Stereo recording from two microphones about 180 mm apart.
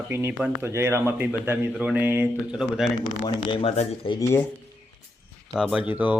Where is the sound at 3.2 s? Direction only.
30° left (ahead or behind).